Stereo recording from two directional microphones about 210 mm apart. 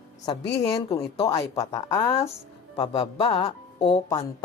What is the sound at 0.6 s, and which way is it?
A woman's voice, 15° left (ahead or behind).